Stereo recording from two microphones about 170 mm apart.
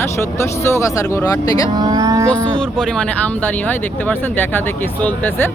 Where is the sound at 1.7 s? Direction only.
20° right (ahead or behind).